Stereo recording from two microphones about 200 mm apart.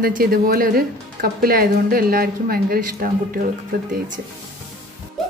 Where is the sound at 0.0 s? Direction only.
45° right (ahead or behind).